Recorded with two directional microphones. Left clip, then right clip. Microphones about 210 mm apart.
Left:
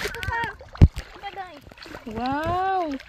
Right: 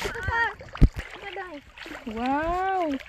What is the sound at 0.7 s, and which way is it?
Splash, 35° left (ahead or behind).